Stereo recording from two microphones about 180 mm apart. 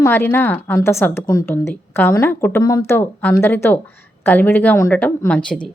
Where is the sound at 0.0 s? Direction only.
10° left (ahead or behind).